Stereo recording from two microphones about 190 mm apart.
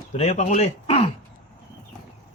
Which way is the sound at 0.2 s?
40° left (ahead or behind).